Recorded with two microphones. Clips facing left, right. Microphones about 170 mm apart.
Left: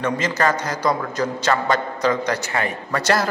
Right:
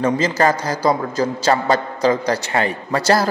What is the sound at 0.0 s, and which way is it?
A man's voice, 35° right (ahead or behind).